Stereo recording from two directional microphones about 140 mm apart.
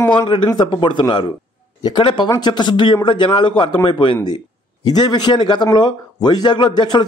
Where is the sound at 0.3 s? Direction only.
35° left (ahead or behind).